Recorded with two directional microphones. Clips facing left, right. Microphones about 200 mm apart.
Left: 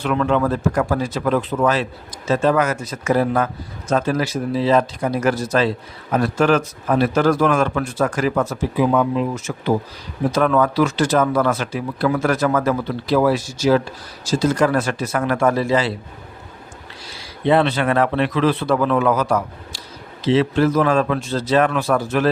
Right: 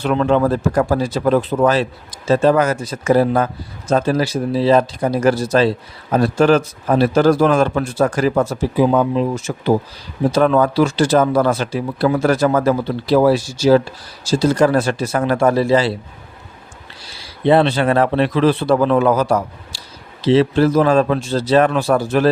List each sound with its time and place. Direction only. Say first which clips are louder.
0.0 s speech: right 3 dB; 35° right (ahead or behind)
17.4 s speech: right 3 dB; 30° right (ahead or behind)